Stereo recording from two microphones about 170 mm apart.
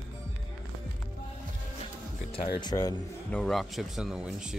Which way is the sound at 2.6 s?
25° left (ahead or behind).